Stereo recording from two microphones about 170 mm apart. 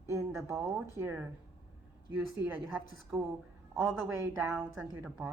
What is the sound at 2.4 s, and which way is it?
Speech, 10° right (ahead or behind).